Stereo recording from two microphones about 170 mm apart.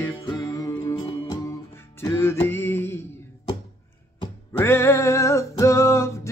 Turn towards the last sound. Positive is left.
turn(degrees=15)  # may be behind; listen again after turning